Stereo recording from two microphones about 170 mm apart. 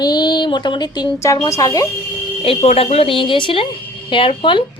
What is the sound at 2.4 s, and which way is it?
A woman's voice, 35° left (ahead or behind).